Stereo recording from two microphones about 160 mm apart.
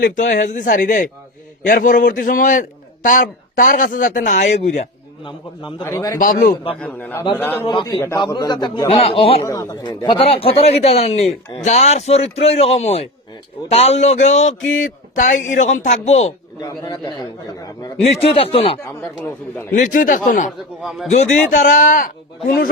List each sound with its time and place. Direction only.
0.0 s a man's voice: 55° left (ahead or behind)
5.8 s a man's voice: 20° left (ahead or behind)
6.1 s a man's voice: 60° left (ahead or behind)
6.7 s a man's voice: 10° left (ahead or behind)
7.7 s a man's voice: 30° left (ahead or behind)
9.5 s speech: 20° left (ahead or behind); by 16.3 s 45° left (ahead or behind)
16.6 s a man's voice: 25° left (ahead or behind)
18.0 s speech: 40° left (ahead or behind)
19.7 s speech: 55° left (ahead or behind)
21.5 s a man's voice: 55° left (ahead or behind)